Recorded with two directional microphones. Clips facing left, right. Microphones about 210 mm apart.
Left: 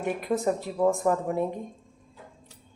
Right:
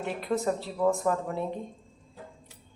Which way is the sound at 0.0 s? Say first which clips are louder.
Left 2 dB; 15° left (ahead or behind).